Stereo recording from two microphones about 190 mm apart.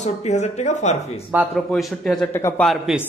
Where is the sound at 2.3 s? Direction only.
10° left (ahead or behind).